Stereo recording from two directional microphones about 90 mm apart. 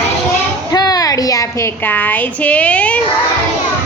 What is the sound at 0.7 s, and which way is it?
Speech, 45° left (ahead or behind).